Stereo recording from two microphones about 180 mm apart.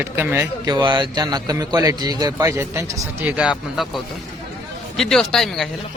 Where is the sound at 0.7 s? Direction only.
25° right (ahead or behind).